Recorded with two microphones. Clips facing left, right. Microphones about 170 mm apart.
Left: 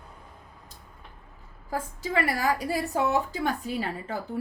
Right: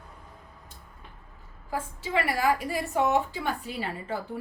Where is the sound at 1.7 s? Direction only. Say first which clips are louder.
Left 1 dB; 40° left (ahead or behind).